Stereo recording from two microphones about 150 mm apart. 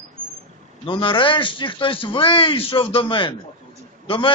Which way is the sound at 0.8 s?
35° left (ahead or behind).